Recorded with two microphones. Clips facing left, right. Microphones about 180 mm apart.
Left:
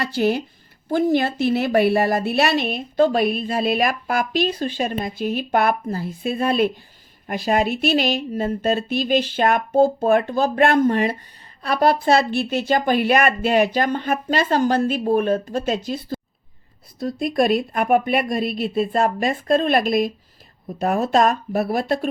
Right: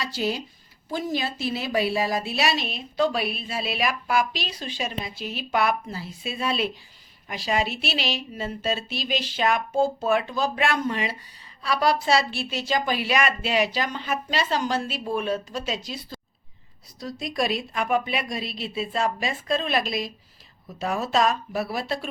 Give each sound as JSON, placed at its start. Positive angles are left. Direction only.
{"t": 0.0, "sound": "a woman's voice", "side_deg": 60}